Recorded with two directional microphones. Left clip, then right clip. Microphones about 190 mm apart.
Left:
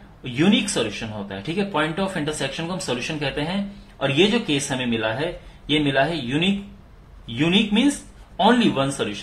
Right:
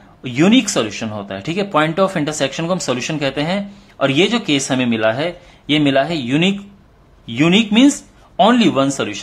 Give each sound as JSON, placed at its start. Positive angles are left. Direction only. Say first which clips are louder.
{"t": 0.2, "sound": "speech", "louder": "right 6 dB", "side_deg": -45}